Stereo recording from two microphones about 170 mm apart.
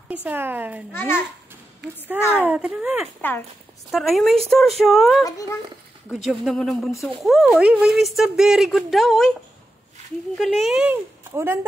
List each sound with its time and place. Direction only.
0.1 s speech: 10° right (ahead or behind)
0.9 s speech: 15° left (ahead or behind)
1.8 s speech: 80° right
2.3 s speech: 10° right (ahead or behind)
3.2 s speech: 10° left (ahead or behind)
3.9 s speech: centre (ahead or behind)
5.2 s speech: 20° left (ahead or behind)
6.2 s speech: centre (ahead or behind)
11.3 s speech: 15° right (ahead or behind)